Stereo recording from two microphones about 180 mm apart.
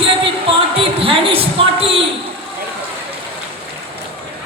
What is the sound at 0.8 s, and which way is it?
A woman's voice, 30° right (ahead or behind).